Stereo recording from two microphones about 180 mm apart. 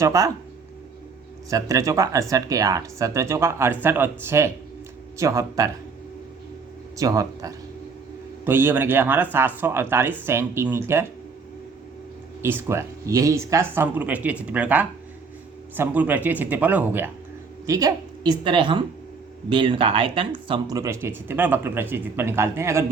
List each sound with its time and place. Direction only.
0.0 s speech: 20° right (ahead or behind)
1.5 s speech: 20° right (ahead or behind)
6.9 s speech: 20° right (ahead or behind)
12.4 s speech: 15° right (ahead or behind)
17.7 s a woman's voice: 20° right (ahead or behind)